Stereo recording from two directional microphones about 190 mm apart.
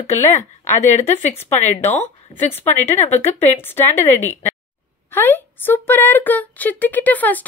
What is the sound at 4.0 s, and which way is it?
Speech, 35° left (ahead or behind).